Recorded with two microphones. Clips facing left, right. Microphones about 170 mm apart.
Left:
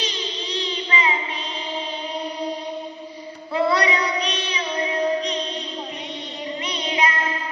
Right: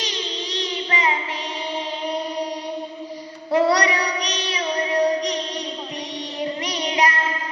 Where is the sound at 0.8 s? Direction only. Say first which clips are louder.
Right 1 dB; 40° right (ahead or behind).